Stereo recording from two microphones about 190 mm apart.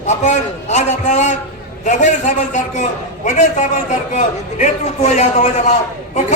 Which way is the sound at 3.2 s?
40° left (ahead or behind).